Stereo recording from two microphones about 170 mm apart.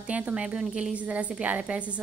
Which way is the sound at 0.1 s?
10° right (ahead or behind).